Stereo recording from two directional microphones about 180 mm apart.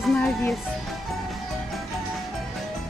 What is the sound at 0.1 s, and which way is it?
Speech, centre (ahead or behind).